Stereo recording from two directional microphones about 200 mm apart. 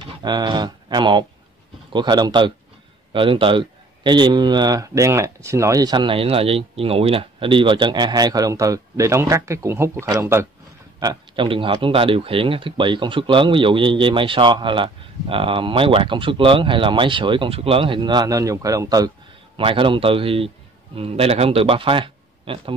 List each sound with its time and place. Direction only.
0.2 s speech: 20° right (ahead or behind)